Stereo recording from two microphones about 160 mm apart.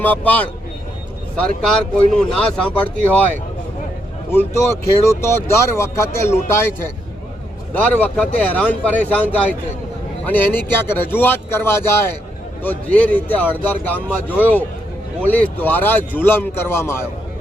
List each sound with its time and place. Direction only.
0.0 s a man's voice: 10° left (ahead or behind)
4.3 s a man's voice: 15° left (ahead or behind)
10.2 s a man's voice: 10° left (ahead or behind)